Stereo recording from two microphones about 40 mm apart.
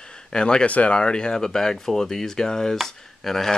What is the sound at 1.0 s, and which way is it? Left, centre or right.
Speech, left.